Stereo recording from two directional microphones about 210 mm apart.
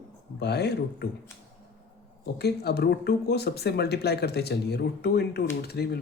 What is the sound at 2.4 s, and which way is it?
Speech, 50° left (ahead or behind).